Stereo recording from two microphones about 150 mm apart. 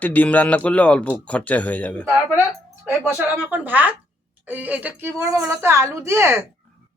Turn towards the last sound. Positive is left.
turn(degrees=-15)  # may be behind; listen again after turning